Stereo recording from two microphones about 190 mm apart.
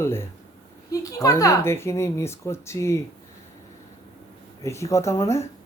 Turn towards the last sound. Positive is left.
turn(degrees=15)  # may be behind; listen again after turning